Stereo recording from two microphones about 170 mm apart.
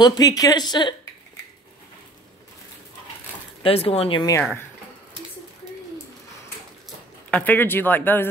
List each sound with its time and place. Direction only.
0.0 s speech: 25° left (ahead or behind)
3.6 s speech: 35° left (ahead or behind)
7.2 s speech: 10° left (ahead or behind)